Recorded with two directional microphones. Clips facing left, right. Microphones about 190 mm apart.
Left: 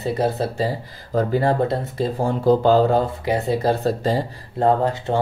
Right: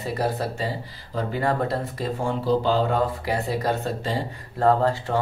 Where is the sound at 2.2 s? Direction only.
45° left (ahead or behind).